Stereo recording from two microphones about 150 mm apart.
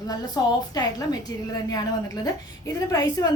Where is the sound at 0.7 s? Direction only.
25° left (ahead or behind).